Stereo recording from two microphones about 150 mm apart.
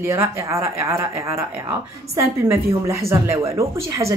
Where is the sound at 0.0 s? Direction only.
20° right (ahead or behind).